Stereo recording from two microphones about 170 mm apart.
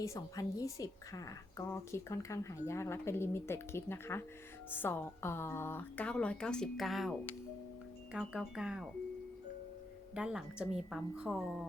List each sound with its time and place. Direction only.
0.0 s a woman's voice: 20° left (ahead or behind); by 8.9 s 5° right (ahead or behind)
10.2 s a woman's voice: 5° right (ahead or behind)